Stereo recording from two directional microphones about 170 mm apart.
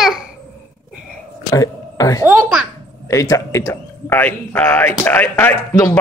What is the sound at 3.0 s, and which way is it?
A man's voice, 20° left (ahead or behind).